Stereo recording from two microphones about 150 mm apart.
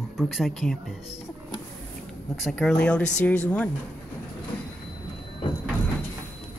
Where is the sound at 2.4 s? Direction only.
5° left (ahead or behind).